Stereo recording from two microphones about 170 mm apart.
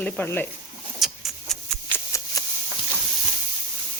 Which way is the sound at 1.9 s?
20° left (ahead or behind).